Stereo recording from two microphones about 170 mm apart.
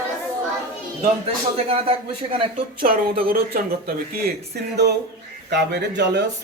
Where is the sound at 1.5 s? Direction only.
35° right (ahead or behind).